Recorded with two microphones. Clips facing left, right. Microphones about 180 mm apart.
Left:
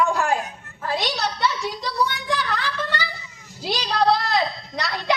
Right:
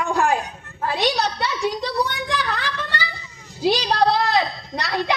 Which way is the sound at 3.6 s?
60° right (ahead or behind).